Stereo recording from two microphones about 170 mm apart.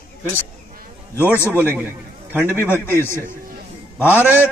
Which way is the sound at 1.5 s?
10° right (ahead or behind).